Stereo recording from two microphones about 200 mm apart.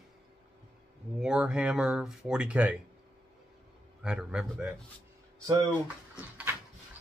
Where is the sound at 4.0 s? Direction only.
5° right (ahead or behind).